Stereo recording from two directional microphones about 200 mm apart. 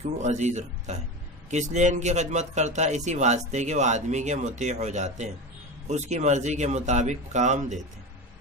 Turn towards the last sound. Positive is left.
turn(degrees=-40)  # may be behind; listen again after turning